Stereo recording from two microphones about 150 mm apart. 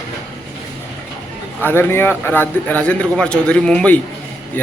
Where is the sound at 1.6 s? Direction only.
15° left (ahead or behind).